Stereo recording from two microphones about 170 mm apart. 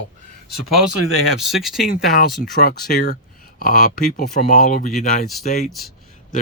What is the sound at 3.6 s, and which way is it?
Speech, 50° left (ahead or behind).